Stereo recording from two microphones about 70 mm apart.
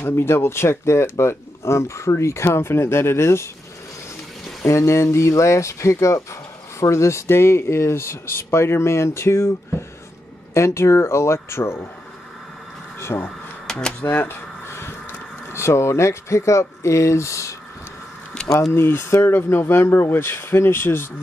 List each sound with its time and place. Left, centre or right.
0.0 s speech: left
4.6 s speech: left
13.0 s speech: left
13.7 s a sound: centre
14.0 s speech: left
18.7 s speech: left